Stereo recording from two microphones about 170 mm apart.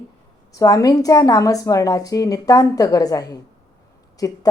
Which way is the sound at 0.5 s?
20° left (ahead or behind).